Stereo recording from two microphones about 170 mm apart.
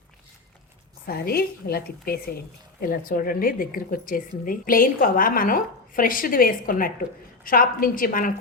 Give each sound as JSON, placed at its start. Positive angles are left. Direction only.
{"t": 1.0, "sound": "a woman's voice", "side_deg": 65}